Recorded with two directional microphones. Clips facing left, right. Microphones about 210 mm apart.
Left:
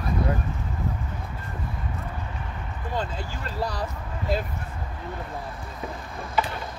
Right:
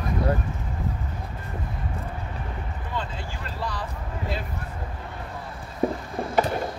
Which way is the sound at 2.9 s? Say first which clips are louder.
Left 3 dB; 40° left (ahead or behind).